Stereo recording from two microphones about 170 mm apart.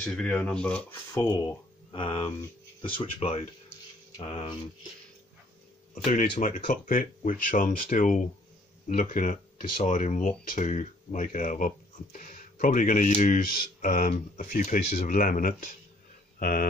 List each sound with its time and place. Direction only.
0.0 s speech: 5° left (ahead or behind)
1.1 s speech: 25° left (ahead or behind)
6.0 s speech: 50° left (ahead or behind)